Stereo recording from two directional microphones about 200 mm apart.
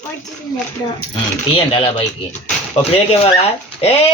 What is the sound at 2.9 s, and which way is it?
Speech, 30° left (ahead or behind).